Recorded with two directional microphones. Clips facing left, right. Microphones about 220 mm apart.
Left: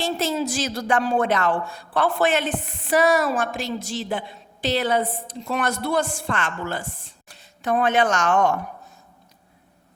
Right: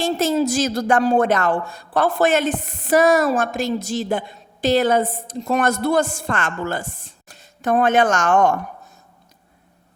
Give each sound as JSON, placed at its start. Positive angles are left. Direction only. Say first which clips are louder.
{"t": 0.0, "sound": "speech", "louder": "right 5 dB", "side_deg": -45}